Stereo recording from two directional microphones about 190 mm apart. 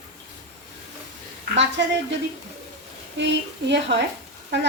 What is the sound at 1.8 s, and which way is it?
Speech, 65° right (ahead or behind).